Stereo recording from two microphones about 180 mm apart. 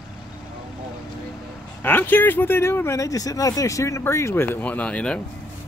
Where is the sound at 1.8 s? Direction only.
10° left (ahead or behind).